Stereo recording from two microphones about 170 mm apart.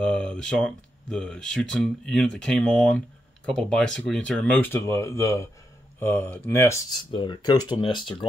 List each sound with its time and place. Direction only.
0.0 s speech: 5° left (ahead or behind)
7.1 s speech: 30° left (ahead or behind)